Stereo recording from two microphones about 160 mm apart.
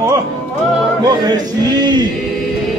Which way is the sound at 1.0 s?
25° right (ahead or behind).